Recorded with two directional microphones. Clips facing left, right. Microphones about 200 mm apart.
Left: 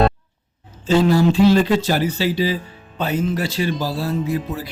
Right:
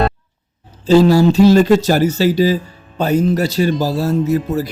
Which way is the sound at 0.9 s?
35° right (ahead or behind).